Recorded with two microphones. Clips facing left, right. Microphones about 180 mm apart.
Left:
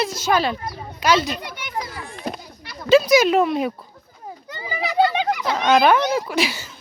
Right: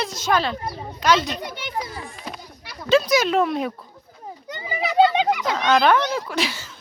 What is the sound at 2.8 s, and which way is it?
Speech, 10° left (ahead or behind).